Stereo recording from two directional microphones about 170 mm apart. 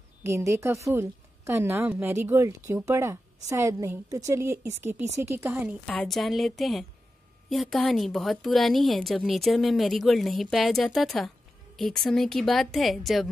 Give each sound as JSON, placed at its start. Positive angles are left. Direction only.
{"t": 0.2, "sound": "a woman's voice", "side_deg": -15}
{"t": 5.9, "sound": "a woman's voice", "side_deg": 0}